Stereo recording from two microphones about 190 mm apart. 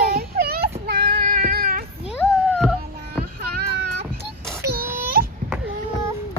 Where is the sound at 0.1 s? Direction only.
55° right (ahead or behind).